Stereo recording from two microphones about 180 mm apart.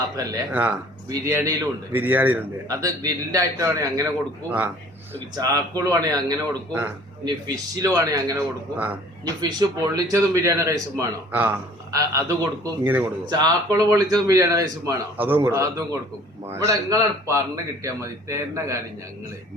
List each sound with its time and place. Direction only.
0.3 s a man's voice: 10° right (ahead or behind)
5.4 s a man's voice: 20° right (ahead or behind)